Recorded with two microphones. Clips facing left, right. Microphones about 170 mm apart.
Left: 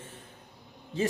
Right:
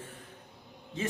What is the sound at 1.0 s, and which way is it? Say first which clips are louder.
Speech: left 5 dB; 35° left (ahead or behind).